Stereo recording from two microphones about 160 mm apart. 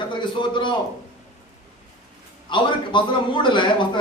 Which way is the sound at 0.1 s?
30° left (ahead or behind).